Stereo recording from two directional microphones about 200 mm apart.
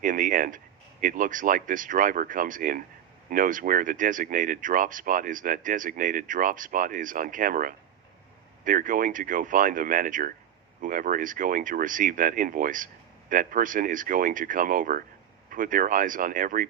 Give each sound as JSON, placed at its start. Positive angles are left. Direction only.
{"t": 0.0, "sound": "speech", "side_deg": -40}